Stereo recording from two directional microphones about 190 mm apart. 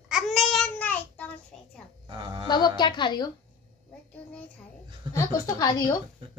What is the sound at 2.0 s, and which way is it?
Speech, 25° right (ahead or behind).